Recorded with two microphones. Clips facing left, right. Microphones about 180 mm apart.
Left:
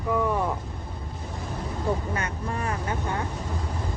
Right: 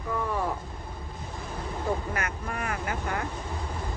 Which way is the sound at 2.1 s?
30° left (ahead or behind).